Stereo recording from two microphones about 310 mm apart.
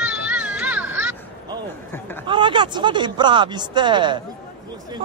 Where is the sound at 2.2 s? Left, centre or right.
Centre.